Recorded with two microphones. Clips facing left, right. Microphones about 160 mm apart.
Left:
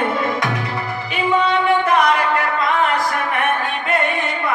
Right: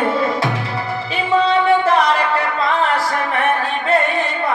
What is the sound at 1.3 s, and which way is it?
Music, 30° right (ahead or behind).